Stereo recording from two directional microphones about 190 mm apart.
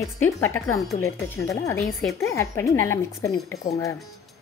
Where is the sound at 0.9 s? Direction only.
15° left (ahead or behind).